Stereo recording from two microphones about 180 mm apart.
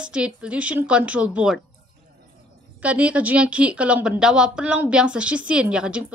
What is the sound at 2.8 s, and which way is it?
Speech, 5° right (ahead or behind).